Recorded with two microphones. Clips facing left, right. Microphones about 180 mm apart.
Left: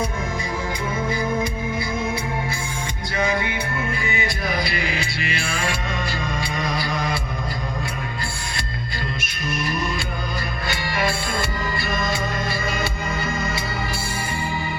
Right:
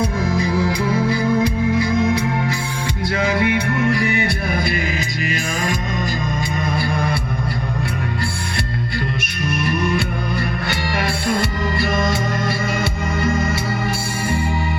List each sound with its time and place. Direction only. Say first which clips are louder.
0.3 s music: right 8 dB; 70° right (ahead or behind)
4.5 s music: right 3 dB; 50° right (ahead or behind)
9.5 s music: right 5 dB; 60° right (ahead or behind)